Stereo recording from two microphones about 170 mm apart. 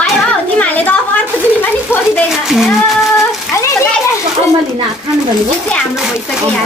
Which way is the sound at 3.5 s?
20° left (ahead or behind).